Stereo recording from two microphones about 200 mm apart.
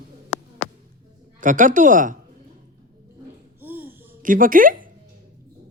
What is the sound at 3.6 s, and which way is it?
Babbling, 10° right (ahead or behind).